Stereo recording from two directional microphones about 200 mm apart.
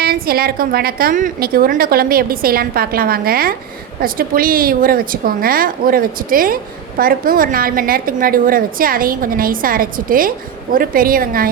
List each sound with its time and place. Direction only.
0.0 s a woman's voice: 50° right (ahead or behind)